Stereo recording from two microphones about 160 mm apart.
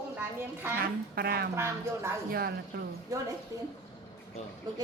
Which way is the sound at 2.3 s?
75° right (ahead or behind).